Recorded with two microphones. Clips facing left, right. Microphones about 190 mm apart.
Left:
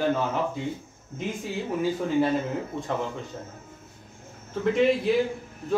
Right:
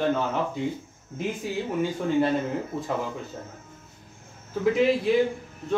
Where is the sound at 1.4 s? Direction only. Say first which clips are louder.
Left 1 dB; centre (ahead or behind).